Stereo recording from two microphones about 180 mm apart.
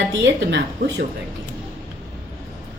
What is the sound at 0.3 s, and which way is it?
Speech, 75° right (ahead or behind).